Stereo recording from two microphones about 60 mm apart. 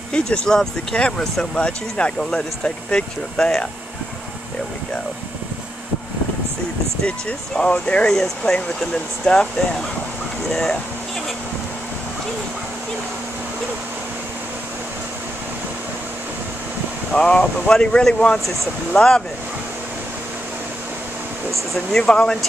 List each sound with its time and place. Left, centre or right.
0.1 s speech: centre
7.1 s speech: centre
8.1 s speech: centre
17.1 s speech: centre
21.7 s speech: centre